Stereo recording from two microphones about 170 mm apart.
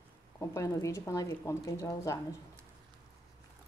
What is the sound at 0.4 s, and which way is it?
Speech, 20° left (ahead or behind).